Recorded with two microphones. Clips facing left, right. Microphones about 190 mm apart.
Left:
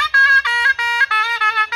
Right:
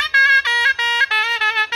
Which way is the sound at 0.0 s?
20° right (ahead or behind).